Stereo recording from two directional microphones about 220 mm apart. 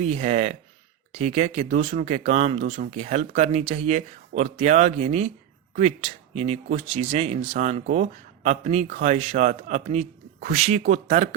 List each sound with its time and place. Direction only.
0.0 s speech: 35° right (ahead or behind)
6.3 s speech: 30° right (ahead or behind)